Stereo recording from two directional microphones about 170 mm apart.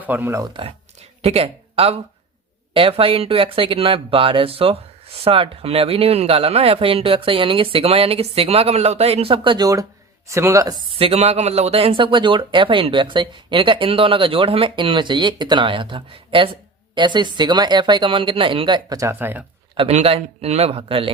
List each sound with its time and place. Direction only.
0.0 s speech: 10° right (ahead or behind)
1.2 s speech: 35° right (ahead or behind); by 10.8 s 20° right (ahead or behind)
10.9 s speech: 35° right (ahead or behind); by 19.5 s 10° right (ahead or behind)
19.7 s speech: 35° right (ahead or behind)